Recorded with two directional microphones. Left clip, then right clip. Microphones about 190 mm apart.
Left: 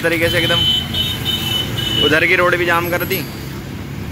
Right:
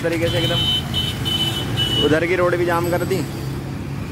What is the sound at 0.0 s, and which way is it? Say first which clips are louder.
Speech: left 5 dB; centre (ahead or behind).